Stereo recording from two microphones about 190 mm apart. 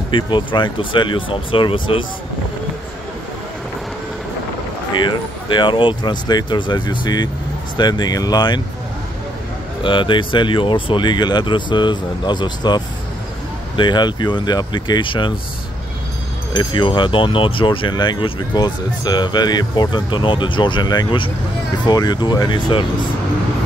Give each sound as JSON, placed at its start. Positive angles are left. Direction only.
{"t": 0.1, "sound": "speech", "side_deg": 25}
{"t": 4.9, "sound": "speech", "side_deg": 25}
{"t": 9.8, "sound": "speech", "side_deg": 25}
{"t": 16.5, "sound": "speech", "side_deg": 25}